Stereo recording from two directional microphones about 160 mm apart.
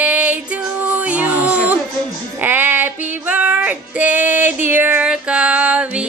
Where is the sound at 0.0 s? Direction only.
10° right (ahead or behind).